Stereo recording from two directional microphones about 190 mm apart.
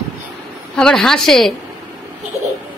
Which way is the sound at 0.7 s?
5° left (ahead or behind).